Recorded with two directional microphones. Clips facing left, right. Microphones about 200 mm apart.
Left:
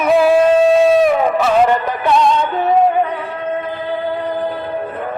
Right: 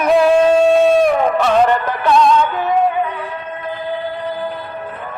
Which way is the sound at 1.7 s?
15° left (ahead or behind).